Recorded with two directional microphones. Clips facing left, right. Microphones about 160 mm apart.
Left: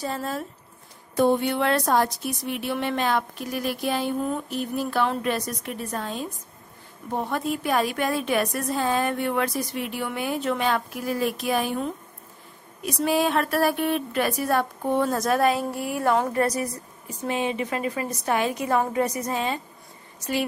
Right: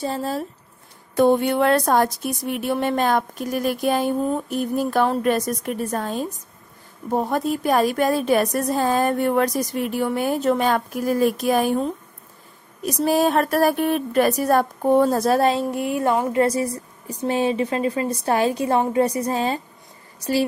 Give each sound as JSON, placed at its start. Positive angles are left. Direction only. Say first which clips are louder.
{"t": 0.0, "sound": "a woman's voice", "louder": "right 4 dB", "side_deg": -30}
{"t": 1.1, "sound": "a woman's voice", "louder": "right 4 dB", "side_deg": -55}
{"t": 17.1, "sound": "a woman's voice", "louder": "right 5 dB", "side_deg": -35}